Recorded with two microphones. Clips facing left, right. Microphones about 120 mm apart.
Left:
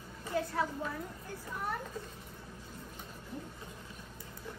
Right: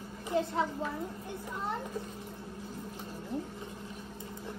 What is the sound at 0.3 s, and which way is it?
Speech, 25° right (ahead or behind).